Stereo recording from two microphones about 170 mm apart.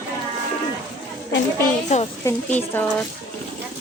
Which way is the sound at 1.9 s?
45° left (ahead or behind).